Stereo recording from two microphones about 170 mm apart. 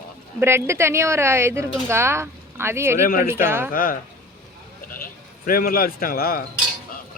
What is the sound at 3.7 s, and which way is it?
Speech, 60° left (ahead or behind).